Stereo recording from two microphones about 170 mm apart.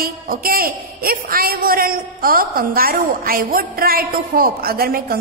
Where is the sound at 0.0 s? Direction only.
60° right (ahead or behind).